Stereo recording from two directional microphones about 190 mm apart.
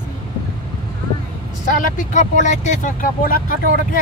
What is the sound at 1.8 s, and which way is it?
Speech, 40° left (ahead or behind).